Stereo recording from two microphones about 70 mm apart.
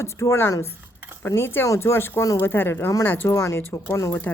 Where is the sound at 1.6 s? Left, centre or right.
Left.